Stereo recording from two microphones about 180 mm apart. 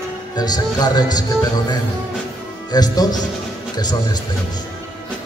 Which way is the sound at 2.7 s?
20° left (ahead or behind).